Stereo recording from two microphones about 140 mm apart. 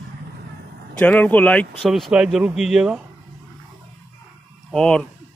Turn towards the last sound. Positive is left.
turn(degrees=5)  # may be behind; listen again after turning